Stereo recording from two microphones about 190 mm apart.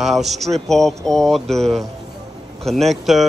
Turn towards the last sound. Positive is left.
turn(degrees=0)  # may be behind; listen again after turning